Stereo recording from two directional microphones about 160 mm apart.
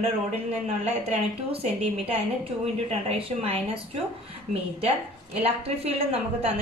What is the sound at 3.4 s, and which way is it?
A woman's voice, 35° right (ahead or behind).